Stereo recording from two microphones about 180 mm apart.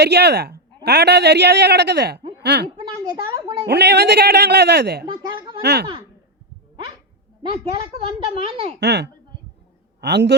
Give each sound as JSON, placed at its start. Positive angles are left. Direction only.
{"t": 0.0, "sound": "speech", "side_deg": -65}
{"t": 2.7, "sound": "a sound", "side_deg": -20}
{"t": 3.7, "sound": "speech", "side_deg": -65}
{"t": 5.0, "sound": "a sound", "side_deg": -25}
{"t": 7.6, "sound": "a woman's voice", "side_deg": -30}
{"t": 8.8, "sound": "speech", "side_deg": -65}